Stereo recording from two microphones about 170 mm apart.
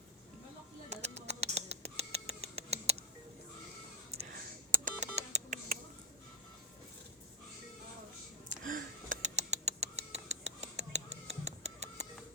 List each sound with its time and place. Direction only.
0.9 s a sound: 40° right (ahead or behind)
4.9 s telephone dialing: 40° right (ahead or behind)
8.4 s rodents: 50° right (ahead or behind)